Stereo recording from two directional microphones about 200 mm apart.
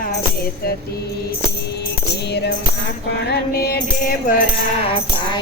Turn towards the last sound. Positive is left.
turn(degrees=50)  # may be behind; listen again after turning